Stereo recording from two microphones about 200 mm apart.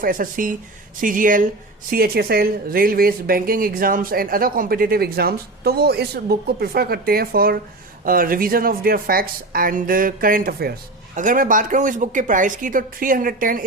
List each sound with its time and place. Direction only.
0.0 s speech: 45° right (ahead or behind)